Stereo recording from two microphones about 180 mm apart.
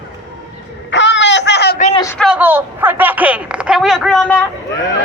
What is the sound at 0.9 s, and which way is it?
Speech, 85° left.